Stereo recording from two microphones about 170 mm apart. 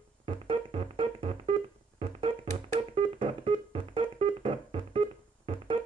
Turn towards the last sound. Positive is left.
turn(degrees=-35)  # may be behind; listen again after turning